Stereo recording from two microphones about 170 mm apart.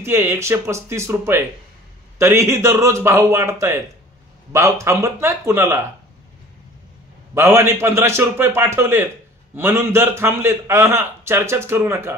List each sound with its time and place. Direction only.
0.0 s a man's voice: 15° right (ahead or behind)
7.3 s a man's voice: 15° right (ahead or behind)